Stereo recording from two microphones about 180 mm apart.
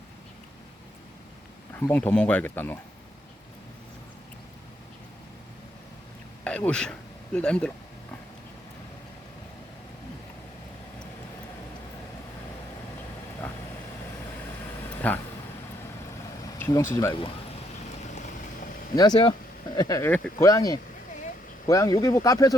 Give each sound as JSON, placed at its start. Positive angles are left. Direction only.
{"t": 1.9, "sound": "speech", "side_deg": 10}
{"t": 6.4, "sound": "speech", "side_deg": 5}
{"t": 14.8, "sound": "a sound", "side_deg": 10}
{"t": 16.6, "sound": "speech", "side_deg": 15}
{"t": 18.9, "sound": "speech", "side_deg": 25}